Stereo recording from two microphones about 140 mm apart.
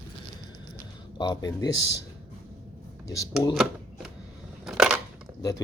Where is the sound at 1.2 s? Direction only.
30° left (ahead or behind).